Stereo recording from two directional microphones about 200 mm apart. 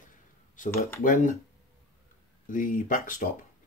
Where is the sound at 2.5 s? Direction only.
40° left (ahead or behind).